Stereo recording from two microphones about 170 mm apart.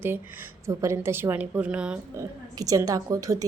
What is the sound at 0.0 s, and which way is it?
A woman's voice, 10° right (ahead or behind).